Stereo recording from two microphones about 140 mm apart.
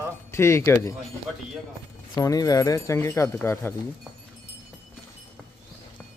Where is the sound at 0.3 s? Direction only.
20° left (ahead or behind).